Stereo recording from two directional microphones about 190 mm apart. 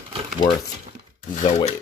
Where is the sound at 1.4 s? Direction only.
40° left (ahead or behind).